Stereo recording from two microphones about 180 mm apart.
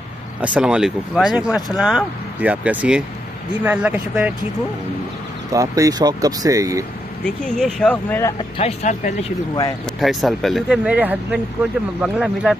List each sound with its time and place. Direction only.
0.4 s speech: 5° right (ahead or behind)
5.5 s speech: 20° right (ahead or behind)
7.2 s speech: 5° left (ahead or behind)
8.5 s speech: 40° left (ahead or behind)
9.9 s speech: centre (ahead or behind)